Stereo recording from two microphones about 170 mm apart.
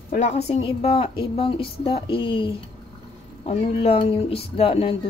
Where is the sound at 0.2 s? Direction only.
40° left (ahead or behind).